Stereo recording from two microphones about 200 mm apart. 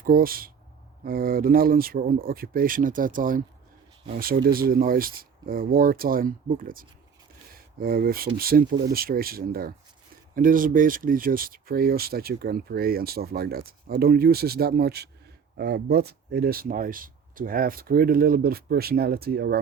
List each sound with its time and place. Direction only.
0.0 s speech: 45° right (ahead or behind)
4.4 s speech: 50° right (ahead or behind)